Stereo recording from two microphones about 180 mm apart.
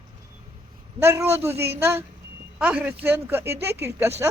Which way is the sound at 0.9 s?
15° right (ahead or behind).